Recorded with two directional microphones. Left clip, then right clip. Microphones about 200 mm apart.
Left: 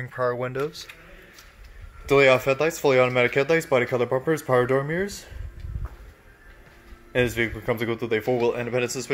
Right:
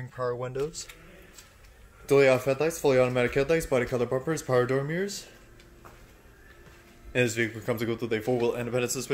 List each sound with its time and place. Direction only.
0.1 s speech: 30° left (ahead or behind)
0.5 s speech: 15° left (ahead or behind)
2.0 s speech: 5° left (ahead or behind)
7.1 s speech: 5° left (ahead or behind)